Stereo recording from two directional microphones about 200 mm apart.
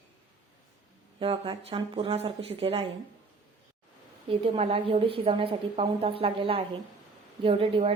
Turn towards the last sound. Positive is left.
turn(degrees=-30)  # may be behind; listen again after turning